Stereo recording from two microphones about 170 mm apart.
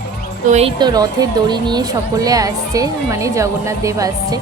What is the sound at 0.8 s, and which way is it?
Speech, 20° right (ahead or behind).